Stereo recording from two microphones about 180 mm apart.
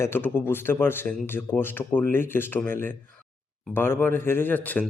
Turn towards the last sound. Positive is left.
turn(degrees=10)  # may be behind; listen again after turning